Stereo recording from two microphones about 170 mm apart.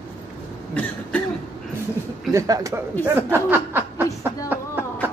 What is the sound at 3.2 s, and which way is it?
Snicker, 15° right (ahead or behind).